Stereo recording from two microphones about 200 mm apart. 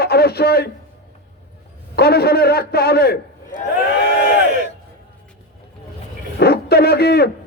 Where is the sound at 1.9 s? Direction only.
50° left (ahead or behind).